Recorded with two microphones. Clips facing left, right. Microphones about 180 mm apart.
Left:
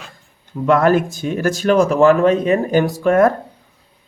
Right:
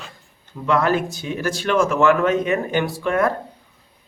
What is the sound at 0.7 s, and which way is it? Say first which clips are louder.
Speech: left 5 dB; 50° left (ahead or behind).